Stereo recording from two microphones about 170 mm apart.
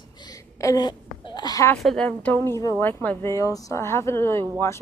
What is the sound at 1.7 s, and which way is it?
A woman's voice, 5° left (ahead or behind).